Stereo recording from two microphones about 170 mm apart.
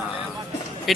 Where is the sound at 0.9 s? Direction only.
Centre (ahead or behind).